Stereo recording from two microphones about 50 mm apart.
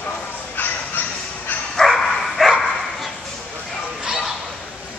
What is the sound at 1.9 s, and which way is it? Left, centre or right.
Dog, centre.